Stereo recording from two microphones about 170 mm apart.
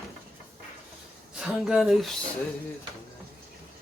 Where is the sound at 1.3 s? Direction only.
5° right (ahead or behind).